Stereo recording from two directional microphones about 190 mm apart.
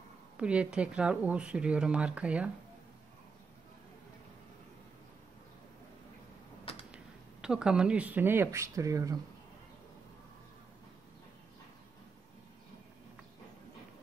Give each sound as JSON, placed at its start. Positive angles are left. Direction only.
{"t": 0.4, "sound": "speech", "side_deg": -5}
{"t": 6.6, "sound": "a sound", "side_deg": 30}
{"t": 7.4, "sound": "speech", "side_deg": -5}